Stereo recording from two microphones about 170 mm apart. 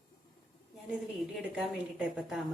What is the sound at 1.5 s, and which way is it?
Speech, 5° right (ahead or behind).